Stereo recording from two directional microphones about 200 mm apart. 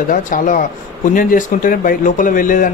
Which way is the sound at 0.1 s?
40° left (ahead or behind).